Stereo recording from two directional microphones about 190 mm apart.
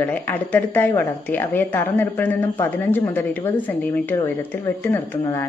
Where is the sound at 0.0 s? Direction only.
10° left (ahead or behind).